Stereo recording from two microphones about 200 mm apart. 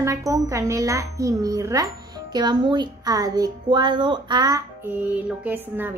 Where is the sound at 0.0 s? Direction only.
15° right (ahead or behind).